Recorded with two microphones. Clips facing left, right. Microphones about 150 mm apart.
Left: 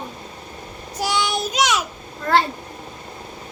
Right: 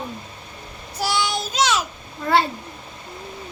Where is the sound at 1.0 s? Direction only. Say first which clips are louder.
Left 1 dB; 15° left (ahead or behind).